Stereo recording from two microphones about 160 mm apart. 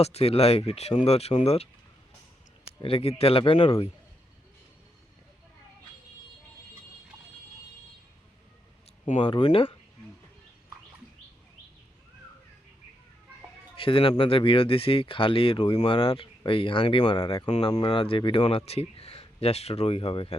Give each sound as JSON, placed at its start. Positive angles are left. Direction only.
{"t": 0.0, "sound": "speech", "side_deg": 40}
{"t": 2.8, "sound": "speech", "side_deg": 35}
{"t": 9.1, "sound": "speech", "side_deg": 30}
{"t": 13.7, "sound": "speech", "side_deg": 35}